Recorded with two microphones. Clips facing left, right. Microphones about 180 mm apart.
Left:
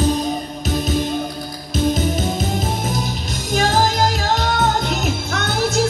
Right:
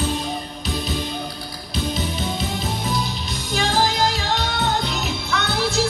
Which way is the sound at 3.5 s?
45° left (ahead or behind).